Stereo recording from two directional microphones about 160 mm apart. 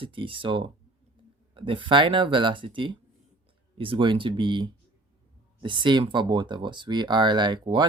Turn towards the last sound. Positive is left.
turn(degrees=-30)  # may be behind; listen again after turning